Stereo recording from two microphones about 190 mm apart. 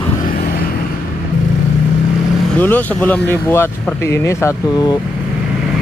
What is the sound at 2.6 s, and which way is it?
Speech, 10° left (ahead or behind).